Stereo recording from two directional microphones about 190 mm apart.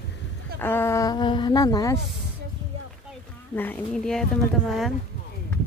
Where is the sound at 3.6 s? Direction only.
5° left (ahead or behind).